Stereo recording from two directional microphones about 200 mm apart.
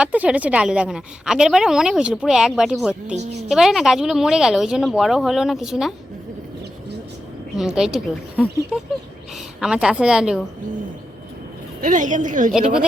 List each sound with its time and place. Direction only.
0.0 s a woman's voice: 5° right (ahead or behind)
7.5 s a woman's voice: 5° right (ahead or behind)
9.6 s a woman's voice: 5° right (ahead or behind)
11.8 s a woman's voice: 40° right (ahead or behind)
12.5 s a woman's voice: 5° right (ahead or behind)